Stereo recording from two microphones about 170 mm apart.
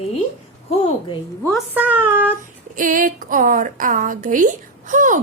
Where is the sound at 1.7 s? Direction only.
10° right (ahead or behind).